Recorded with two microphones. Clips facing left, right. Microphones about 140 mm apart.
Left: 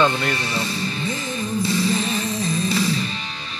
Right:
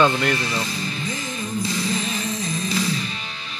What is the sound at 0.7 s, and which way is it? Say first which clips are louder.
Music: left 3 dB; 30° left (ahead or behind).